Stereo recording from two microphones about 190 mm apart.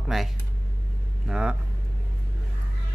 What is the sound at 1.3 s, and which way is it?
Speech, 5° right (ahead or behind).